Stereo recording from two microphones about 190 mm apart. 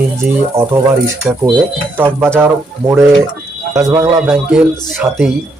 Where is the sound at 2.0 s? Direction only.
10° right (ahead or behind).